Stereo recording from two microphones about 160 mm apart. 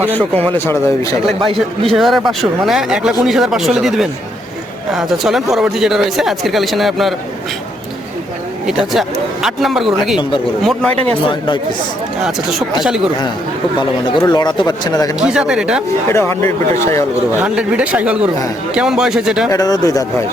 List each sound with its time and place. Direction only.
0.5 s speech: 15° left (ahead or behind)
1.9 s speech: centre (ahead or behind)
8.6 s speech: centre (ahead or behind)
11.3 s speech: 30° left (ahead or behind)
14.2 s speech: 25° left (ahead or behind)
15.2 s speech: 5° right (ahead or behind)
16.0 s speech: 15° left (ahead or behind)
17.3 s speech: 5° right (ahead or behind)
19.5 s speech: 20° left (ahead or behind)